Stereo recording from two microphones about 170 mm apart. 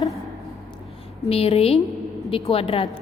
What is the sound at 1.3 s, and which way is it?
A woman's voice, 35° left (ahead or behind).